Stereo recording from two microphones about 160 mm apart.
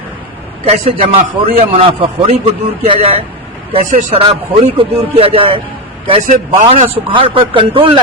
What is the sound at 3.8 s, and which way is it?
Speech, 50° right (ahead or behind).